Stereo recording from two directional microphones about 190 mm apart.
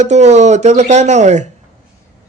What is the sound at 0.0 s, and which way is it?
Speech, 35° right (ahead or behind).